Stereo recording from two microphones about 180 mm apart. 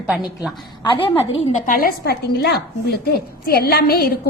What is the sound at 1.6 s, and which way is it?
A woman's voice, 55° left (ahead or behind).